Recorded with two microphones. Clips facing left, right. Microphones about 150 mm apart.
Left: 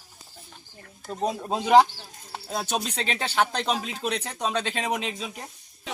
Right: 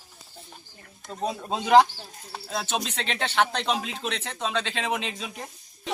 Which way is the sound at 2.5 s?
35° left (ahead or behind).